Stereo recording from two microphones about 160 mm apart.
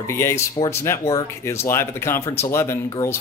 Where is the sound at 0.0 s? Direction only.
15° left (ahead or behind).